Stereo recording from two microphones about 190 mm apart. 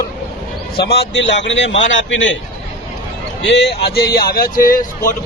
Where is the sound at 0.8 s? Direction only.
55° left (ahead or behind); by 2.4 s 75° left (ahead or behind).